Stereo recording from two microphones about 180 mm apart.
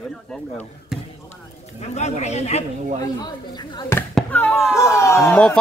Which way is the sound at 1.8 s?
40° left (ahead or behind).